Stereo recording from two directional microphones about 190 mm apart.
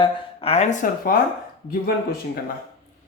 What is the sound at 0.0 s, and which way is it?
Speech, 30° left (ahead or behind).